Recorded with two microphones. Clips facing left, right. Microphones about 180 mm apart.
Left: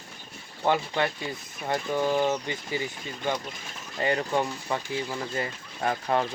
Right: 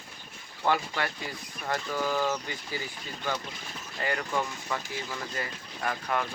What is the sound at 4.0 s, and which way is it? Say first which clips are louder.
Speech: left 5 dB; 25° left (ahead or behind).